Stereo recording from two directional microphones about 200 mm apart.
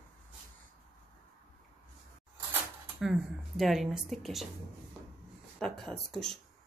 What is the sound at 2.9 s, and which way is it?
Speech, 5° right (ahead or behind).